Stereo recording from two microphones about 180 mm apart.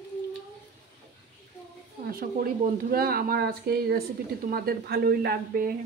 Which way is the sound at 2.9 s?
55° right (ahead or behind).